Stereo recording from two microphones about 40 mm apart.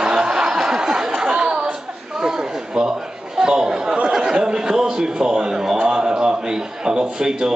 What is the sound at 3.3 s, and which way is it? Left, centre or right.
Chatter, centre.